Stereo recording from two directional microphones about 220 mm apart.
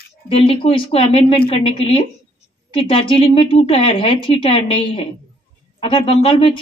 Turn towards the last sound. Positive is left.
turn(degrees=25)  # may be behind; listen again after turning